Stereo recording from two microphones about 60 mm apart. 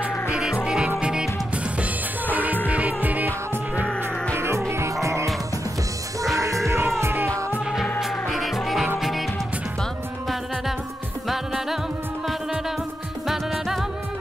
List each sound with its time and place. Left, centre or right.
0.7 s music: centre
1.8 s music: right
4.4 s music: right
6.3 s music: right
8.0 s music: centre
11.2 s music: centre
13.3 s music: centre